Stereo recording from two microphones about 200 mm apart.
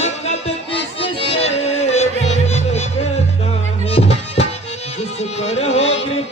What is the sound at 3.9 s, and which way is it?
Music, 30° left (ahead or behind).